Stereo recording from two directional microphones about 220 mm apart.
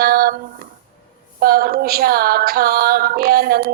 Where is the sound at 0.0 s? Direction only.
40° right (ahead or behind).